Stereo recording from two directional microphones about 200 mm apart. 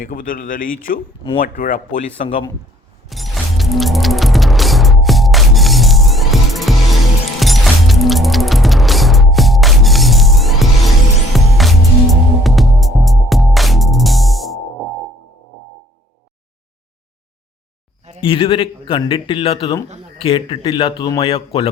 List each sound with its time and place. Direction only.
0.0 s speech: 45° left (ahead or behind)
3.1 s music: centre (ahead or behind)
18.2 s speech: 25° left (ahead or behind)